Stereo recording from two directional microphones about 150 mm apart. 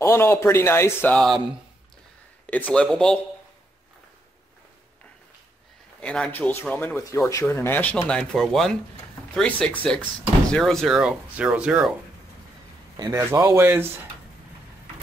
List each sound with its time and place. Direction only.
0.0 s speech: 15° left (ahead or behind)
1.1 s speech: centre (ahead or behind)
2.4 s speech: 10° left (ahead or behind)
5.9 s speech: 5° left (ahead or behind)
13.0 s speech: 20° right (ahead or behind)